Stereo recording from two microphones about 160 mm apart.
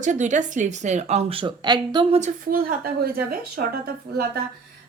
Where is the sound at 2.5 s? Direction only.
65° right (ahead or behind).